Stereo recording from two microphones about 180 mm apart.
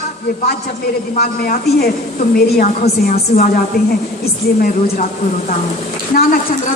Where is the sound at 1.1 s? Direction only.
55° left (ahead or behind).